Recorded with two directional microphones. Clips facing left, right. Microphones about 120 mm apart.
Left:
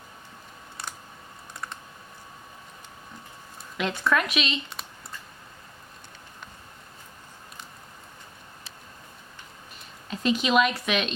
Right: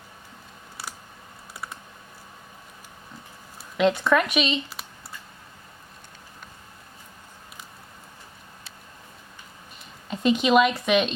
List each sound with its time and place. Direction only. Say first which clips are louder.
1.5 s computer keyboard: even; 5° right (ahead or behind)
3.8 s speech: right 7 dB; 25° right (ahead or behind)
4.1 s speech: right 4 dB; 5° right (ahead or behind)
10.1 s speech: right 4 dB; 5° right (ahead or behind)